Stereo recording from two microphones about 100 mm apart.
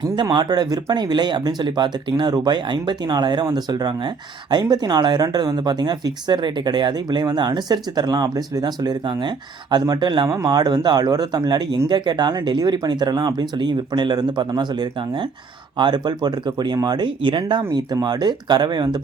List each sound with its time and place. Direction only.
0.0 s speech: 45° right (ahead or behind)
10.2 s speech: 35° right (ahead or behind)